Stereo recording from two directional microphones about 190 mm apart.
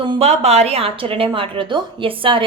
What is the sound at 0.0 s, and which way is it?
A woman's voice, 30° right (ahead or behind).